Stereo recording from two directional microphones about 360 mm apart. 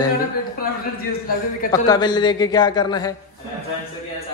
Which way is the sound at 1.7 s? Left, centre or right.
Centre.